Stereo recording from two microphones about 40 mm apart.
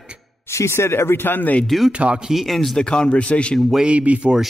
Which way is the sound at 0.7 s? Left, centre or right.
Left.